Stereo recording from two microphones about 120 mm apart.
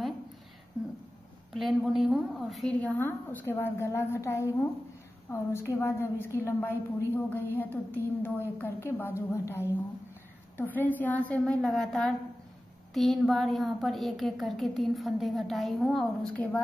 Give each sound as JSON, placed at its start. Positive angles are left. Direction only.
{"t": 1.5, "sound": "a woman's voice", "side_deg": 0}
{"t": 2.8, "sound": "a woman's voice", "side_deg": 15}